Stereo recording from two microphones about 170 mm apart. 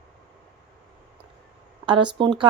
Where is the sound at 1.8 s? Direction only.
30° right (ahead or behind).